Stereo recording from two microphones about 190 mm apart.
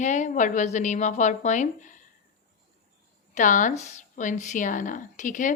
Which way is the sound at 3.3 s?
40° left (ahead or behind).